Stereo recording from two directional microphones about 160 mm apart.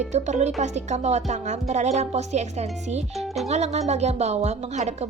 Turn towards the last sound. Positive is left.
turn(degrees=-45)  # may be behind; listen again after turning